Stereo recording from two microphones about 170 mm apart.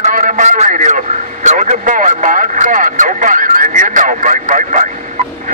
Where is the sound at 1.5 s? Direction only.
45° right (ahead or behind).